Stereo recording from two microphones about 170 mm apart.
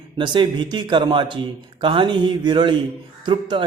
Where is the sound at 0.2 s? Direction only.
25° right (ahead or behind).